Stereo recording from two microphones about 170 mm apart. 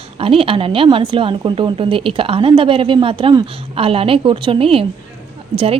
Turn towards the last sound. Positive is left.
turn(degrees=-35)  # may be behind; listen again after turning